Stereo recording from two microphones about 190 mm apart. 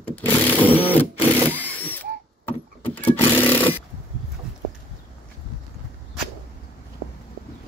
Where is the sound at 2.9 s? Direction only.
10° left (ahead or behind).